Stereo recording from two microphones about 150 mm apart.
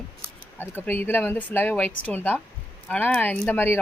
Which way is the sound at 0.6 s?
15° left (ahead or behind).